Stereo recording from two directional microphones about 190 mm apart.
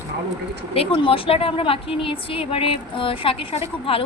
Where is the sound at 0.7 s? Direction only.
30° left (ahead or behind).